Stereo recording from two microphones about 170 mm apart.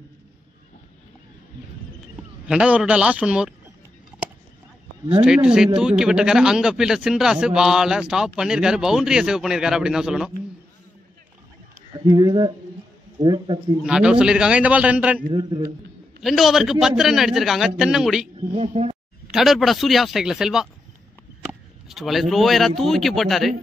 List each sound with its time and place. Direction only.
2.4 s a man's voice: 5° right (ahead or behind)
5.2 s a man's voice: 5° right (ahead or behind)
11.9 s speech: 25° right (ahead or behind)
13.8 s a man's voice: 5° right (ahead or behind)
15.3 s speech: 25° right (ahead or behind)
16.2 s a man's voice: centre (ahead or behind)
18.5 s speech: 35° right (ahead or behind)
19.3 s a man's voice: centre (ahead or behind)